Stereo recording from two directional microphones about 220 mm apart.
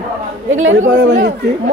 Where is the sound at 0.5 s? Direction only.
60° right (ahead or behind).